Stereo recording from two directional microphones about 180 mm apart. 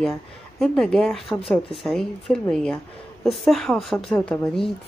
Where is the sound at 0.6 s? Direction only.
5° left (ahead or behind).